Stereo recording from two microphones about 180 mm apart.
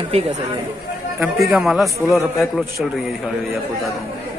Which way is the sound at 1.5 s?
Centre (ahead or behind).